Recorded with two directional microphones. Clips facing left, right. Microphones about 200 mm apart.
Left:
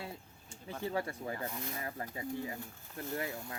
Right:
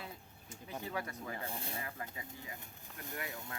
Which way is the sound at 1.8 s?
35° left (ahead or behind).